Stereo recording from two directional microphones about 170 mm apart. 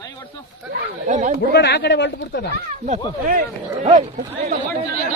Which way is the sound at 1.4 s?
85° left.